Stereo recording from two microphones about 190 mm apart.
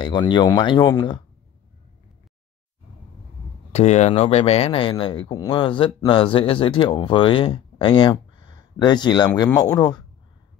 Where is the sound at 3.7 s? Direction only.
35° left (ahead or behind).